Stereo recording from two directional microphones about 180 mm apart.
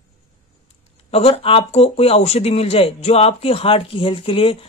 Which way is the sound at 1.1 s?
30° left (ahead or behind).